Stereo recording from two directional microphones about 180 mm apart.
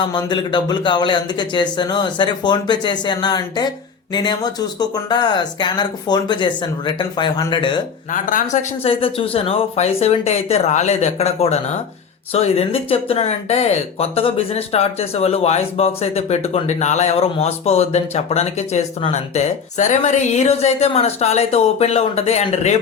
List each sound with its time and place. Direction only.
0.0 s speech: 25° left (ahead or behind)
8.1 s speech: 45° left (ahead or behind)